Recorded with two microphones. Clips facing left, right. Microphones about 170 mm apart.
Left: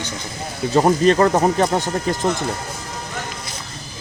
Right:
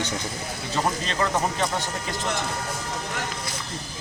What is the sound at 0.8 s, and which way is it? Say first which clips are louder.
Speech: left 12 dB; 50° left (ahead or behind).